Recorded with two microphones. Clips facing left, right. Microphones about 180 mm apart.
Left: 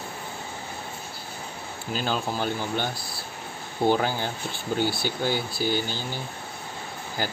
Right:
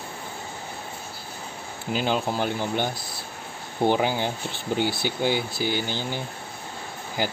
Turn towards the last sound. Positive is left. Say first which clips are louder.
# right 3 dB
turn(degrees=-15)  # may be behind; listen again after turning